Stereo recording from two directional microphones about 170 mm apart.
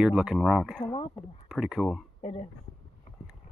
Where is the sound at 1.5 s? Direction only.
Centre (ahead or behind).